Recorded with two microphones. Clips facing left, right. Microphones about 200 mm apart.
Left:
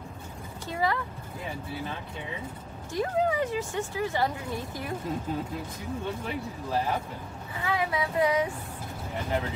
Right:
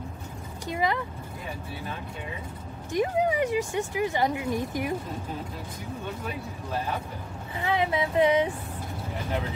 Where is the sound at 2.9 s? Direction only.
15° right (ahead or behind).